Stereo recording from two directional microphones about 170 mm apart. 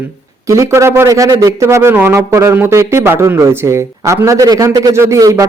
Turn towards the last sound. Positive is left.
turn(degrees=-20)  # may be behind; listen again after turning